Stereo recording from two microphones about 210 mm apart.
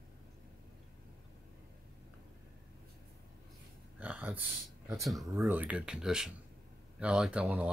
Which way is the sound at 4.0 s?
5° right (ahead or behind).